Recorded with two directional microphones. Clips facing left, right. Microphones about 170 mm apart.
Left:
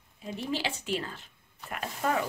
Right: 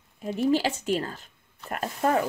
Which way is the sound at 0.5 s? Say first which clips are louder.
Right 7 dB; 40° right (ahead or behind).